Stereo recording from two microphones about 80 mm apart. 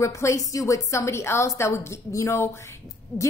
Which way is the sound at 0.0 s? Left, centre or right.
Left.